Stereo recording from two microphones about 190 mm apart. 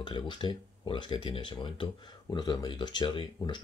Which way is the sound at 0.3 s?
25° left (ahead or behind).